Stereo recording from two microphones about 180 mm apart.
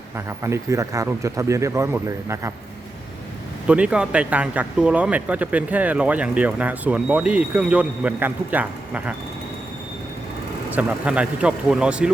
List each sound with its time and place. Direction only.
0.3 s speech: 15° right (ahead or behind)
3.7 s speech: 5° right (ahead or behind)
10.8 s speech: 5° right (ahead or behind)